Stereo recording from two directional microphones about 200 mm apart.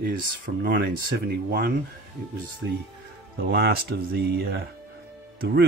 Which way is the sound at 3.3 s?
55° right (ahead or behind).